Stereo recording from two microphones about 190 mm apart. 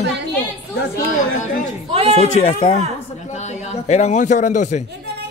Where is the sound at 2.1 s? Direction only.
35° left (ahead or behind).